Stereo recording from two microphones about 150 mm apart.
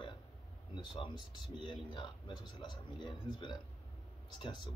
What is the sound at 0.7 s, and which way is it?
Speech, 30° left (ahead or behind).